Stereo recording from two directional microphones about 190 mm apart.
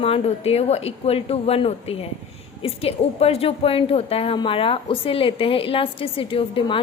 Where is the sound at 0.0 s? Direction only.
30° left (ahead or behind).